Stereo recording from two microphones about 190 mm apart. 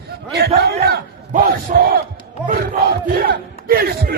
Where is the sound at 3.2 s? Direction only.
55° right (ahead or behind).